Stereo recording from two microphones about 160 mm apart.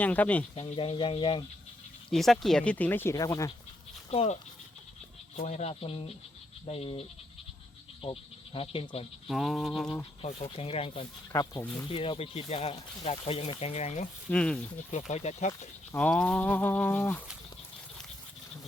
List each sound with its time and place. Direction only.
0.0 s speech: 10° left (ahead or behind)
0.5 s speech: 35° left (ahead or behind)
2.0 s speech: centre (ahead or behind); by 3.5 s 20° left (ahead or behind)
4.1 s speech: 40° left (ahead or behind)
5.4 s speech: 40° left (ahead or behind)
8.0 s insect: 35° left (ahead or behind)
9.2 s toothbrush: centre (ahead or behind)
10.2 s speech: 35° left (ahead or behind)
11.3 s speech: 25° left (ahead or behind)
11.9 s speech: 35° left (ahead or behind)
14.3 s speech: 5° left (ahead or behind)
14.8 s speech: 45° left (ahead or behind)
15.9 s speech: 5° left (ahead or behind)